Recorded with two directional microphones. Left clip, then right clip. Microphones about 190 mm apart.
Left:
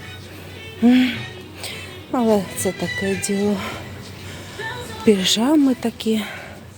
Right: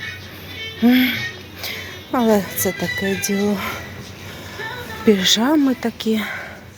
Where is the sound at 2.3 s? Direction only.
10° left (ahead or behind).